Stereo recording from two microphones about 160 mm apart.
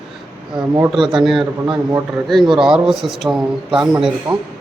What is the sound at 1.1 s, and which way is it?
A man's voice, centre (ahead or behind).